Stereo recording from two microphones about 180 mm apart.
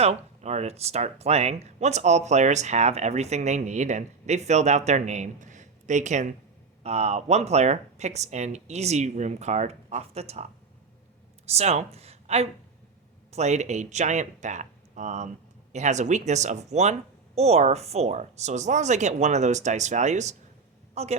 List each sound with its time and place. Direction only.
0.0 s speech: 35° right (ahead or behind)
11.4 s a woman's voice: 35° right (ahead or behind)